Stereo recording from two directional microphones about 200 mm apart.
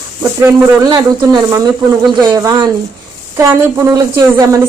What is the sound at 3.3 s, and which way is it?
Speech, 15° right (ahead or behind).